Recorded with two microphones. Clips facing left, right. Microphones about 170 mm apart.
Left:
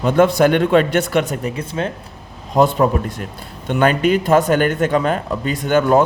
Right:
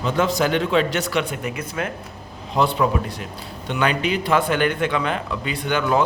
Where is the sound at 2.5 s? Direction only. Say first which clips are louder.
Left 5 dB; 45° left (ahead or behind).